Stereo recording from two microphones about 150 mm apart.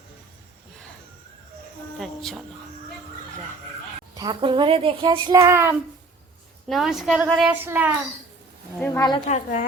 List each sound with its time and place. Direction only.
2.0 s music: centre (ahead or behind)
4.1 s a child's voice: 30° right (ahead or behind)
6.7 s a woman's voice: centre (ahead or behind)
9.0 s a woman's voice: 30° left (ahead or behind)
9.2 s speech: 60° left (ahead or behind)